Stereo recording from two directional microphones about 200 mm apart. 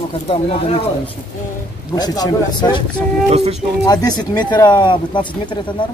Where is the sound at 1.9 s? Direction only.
20° left (ahead or behind).